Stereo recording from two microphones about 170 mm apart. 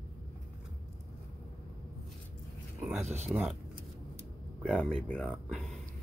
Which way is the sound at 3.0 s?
40° right (ahead or behind).